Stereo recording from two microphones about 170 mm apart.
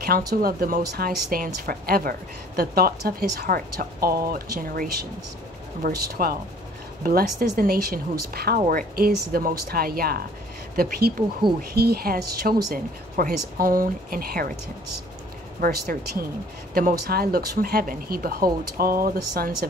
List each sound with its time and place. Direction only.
0.0 s speech: 60° right (ahead or behind)
15.6 s speech: 60° right (ahead or behind)